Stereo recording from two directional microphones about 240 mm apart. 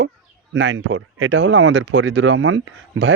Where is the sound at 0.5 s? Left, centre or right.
Right.